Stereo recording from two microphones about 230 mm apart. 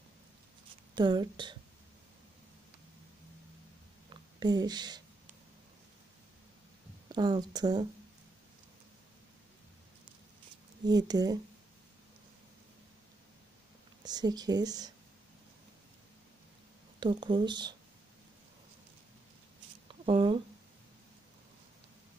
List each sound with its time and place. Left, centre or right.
0.9 s speech: centre
4.1 s a sound: centre
7.1 s speech: centre
10.9 s speech: centre
14.0 s speech: centre
17.0 s speech: centre
20.1 s speech: right